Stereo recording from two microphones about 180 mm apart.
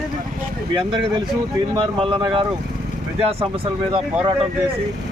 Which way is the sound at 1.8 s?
30° right (ahead or behind).